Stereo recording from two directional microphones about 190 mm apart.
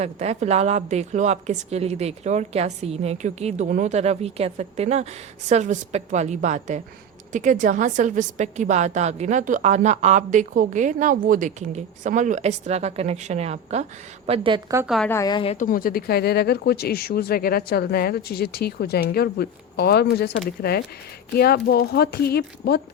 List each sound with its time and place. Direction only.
0.0 s a woman's voice: 35° right (ahead or behind)
14.8 s a woman's voice: centre (ahead or behind)
15.1 s a woman's voice: 20° left (ahead or behind)
15.5 s speech: 45° left (ahead or behind)